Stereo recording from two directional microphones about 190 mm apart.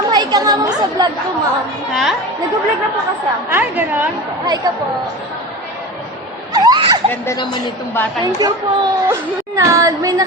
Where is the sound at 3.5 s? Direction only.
10° right (ahead or behind).